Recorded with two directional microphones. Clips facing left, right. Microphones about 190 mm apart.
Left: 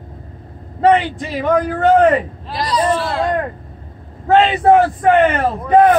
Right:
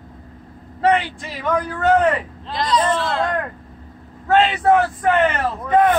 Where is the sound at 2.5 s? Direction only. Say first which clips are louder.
Left 2 dB; 10° left (ahead or behind).